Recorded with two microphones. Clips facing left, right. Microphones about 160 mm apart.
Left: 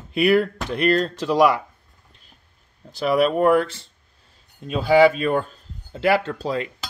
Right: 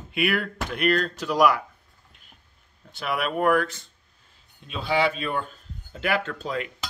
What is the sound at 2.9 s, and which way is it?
Speech, 35° left (ahead or behind).